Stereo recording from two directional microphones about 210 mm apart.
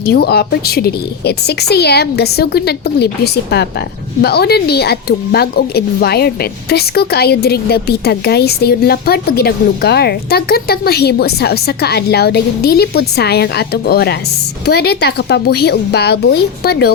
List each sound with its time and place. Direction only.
0.0 s a woman's voice: 50° left (ahead or behind)
4.2 s a woman's voice: 50° left (ahead or behind)